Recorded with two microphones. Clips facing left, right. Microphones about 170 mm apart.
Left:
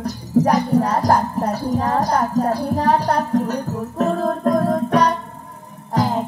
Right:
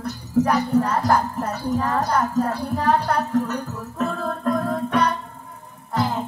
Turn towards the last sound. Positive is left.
turn(degrees=40)  # may be behind; listen again after turning